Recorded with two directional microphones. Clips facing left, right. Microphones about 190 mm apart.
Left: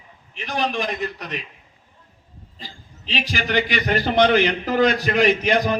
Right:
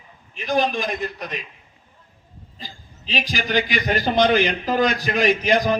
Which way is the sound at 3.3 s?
65° left (ahead or behind).